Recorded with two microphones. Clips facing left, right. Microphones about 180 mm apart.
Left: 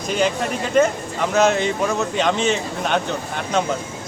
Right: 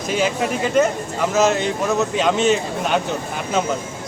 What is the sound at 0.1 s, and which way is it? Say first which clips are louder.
Speech: even; 5° right (ahead or behind).